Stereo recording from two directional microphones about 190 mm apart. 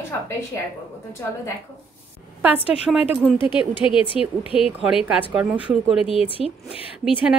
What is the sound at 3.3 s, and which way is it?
Speech, 25° left (ahead or behind).